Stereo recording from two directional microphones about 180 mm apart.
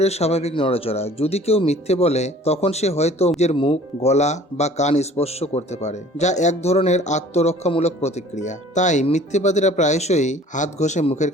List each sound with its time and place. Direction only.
0.0 s speech: 35° left (ahead or behind)